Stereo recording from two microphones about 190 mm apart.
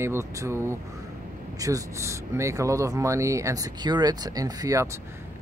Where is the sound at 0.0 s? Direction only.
15° right (ahead or behind).